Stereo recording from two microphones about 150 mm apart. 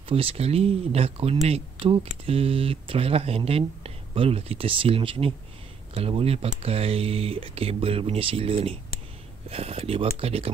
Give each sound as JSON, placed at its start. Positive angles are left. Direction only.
{"t": 0.1, "sound": "speech", "side_deg": -40}